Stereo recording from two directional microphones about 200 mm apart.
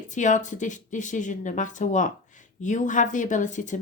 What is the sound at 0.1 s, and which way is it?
Speech, 40° left (ahead or behind).